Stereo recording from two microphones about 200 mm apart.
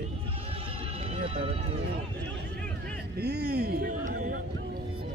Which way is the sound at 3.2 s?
55° right (ahead or behind).